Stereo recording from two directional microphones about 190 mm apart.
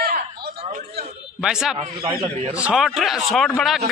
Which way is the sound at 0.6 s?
45° right (ahead or behind).